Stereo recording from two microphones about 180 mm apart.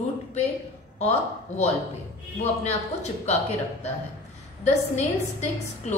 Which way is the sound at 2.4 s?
35° left (ahead or behind).